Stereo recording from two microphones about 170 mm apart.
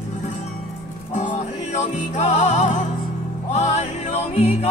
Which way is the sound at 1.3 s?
40° left (ahead or behind).